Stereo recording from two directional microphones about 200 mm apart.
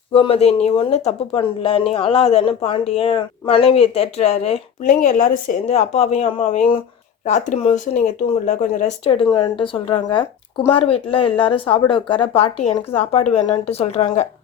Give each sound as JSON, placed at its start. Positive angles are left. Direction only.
{"t": 0.1, "sound": "speech", "side_deg": 30}
{"t": 9.2, "sound": "speech", "side_deg": 20}